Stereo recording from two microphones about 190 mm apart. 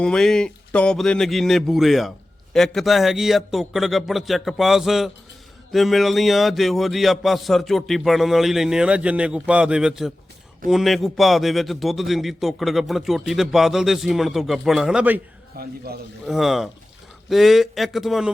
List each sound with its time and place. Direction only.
0.0 s speech: 5° left (ahead or behind)
15.6 s a man's voice: 55° right (ahead or behind)
16.2 s speech: centre (ahead or behind)